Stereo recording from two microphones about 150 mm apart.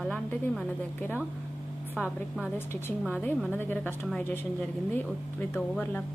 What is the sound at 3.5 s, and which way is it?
Speech, 10° left (ahead or behind).